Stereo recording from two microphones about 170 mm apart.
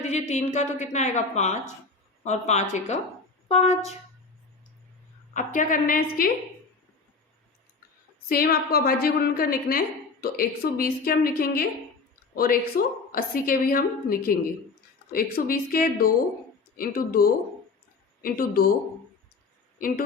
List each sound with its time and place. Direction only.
0.0 s a woman's voice: 40° left (ahead or behind)
5.3 s a woman's voice: 50° left (ahead or behind)
8.3 s a woman's voice: 60° left (ahead or behind)